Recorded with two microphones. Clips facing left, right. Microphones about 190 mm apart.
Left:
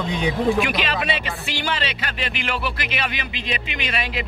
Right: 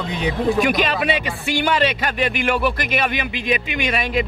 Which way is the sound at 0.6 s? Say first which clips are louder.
Right 4 dB; 45° right (ahead or behind).